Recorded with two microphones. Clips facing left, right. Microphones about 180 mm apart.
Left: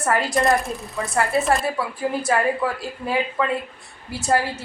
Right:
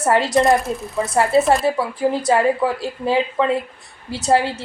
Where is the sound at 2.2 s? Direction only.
25° right (ahead or behind).